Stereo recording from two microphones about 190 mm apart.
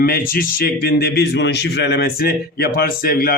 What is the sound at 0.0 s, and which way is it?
A man's voice, 50° left (ahead or behind).